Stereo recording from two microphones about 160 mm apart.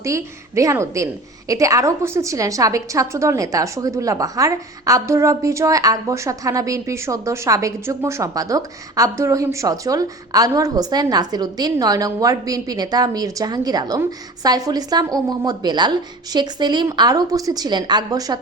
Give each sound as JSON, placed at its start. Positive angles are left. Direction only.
{"t": 0.0, "sound": "a woman's voice", "side_deg": -20}